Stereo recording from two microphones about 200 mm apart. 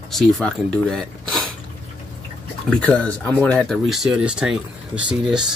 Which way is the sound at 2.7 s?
5° left (ahead or behind).